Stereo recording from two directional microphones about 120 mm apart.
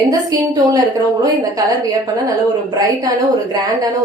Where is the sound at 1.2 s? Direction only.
30° right (ahead or behind).